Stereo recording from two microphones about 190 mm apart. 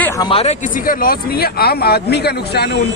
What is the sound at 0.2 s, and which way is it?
Speech, 30° left (ahead or behind).